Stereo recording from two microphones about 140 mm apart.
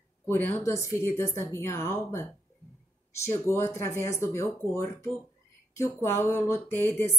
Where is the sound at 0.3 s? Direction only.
15° left (ahead or behind).